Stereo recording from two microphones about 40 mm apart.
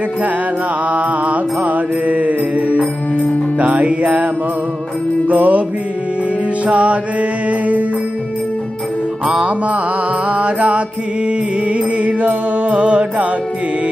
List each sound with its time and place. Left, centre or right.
0.9 s mantra: right
3.5 s music: right
5.3 s music: right
6.7 s music: right
10.3 s music: right
12.0 s music: right